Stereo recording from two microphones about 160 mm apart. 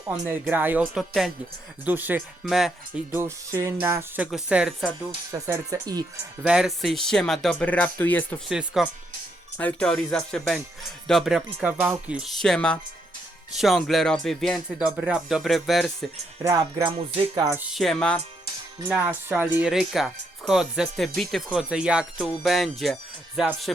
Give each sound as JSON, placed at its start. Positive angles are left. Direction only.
{"t": 0.4, "sound": "speech", "side_deg": -10}
{"t": 4.4, "sound": "speech", "side_deg": -5}
{"t": 5.3, "sound": "speech", "side_deg": -20}
{"t": 6.4, "sound": "speech", "side_deg": -5}
{"t": 8.4, "sound": "speech", "side_deg": -5}
{"t": 9.6, "sound": "speech", "side_deg": 10}
{"t": 16.5, "sound": "speech", "side_deg": -20}
{"t": 17.1, "sound": "music", "side_deg": -35}
{"t": 17.7, "sound": "speech", "side_deg": 5}
{"t": 18.9, "sound": "speech", "side_deg": -10}